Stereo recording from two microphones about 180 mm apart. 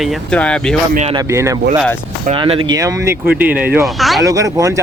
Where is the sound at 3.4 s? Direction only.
10° right (ahead or behind).